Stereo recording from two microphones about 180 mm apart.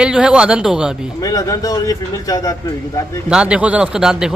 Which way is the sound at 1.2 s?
20° left (ahead or behind).